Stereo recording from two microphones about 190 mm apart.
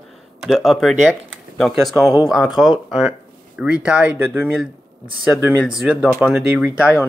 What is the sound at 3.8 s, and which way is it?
Speech, 5° right (ahead or behind).